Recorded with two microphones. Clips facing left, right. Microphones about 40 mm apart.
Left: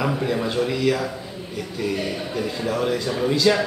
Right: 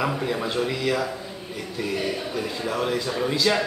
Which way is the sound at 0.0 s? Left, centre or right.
Centre.